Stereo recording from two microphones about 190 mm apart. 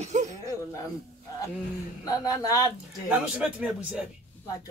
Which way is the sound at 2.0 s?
20° left (ahead or behind).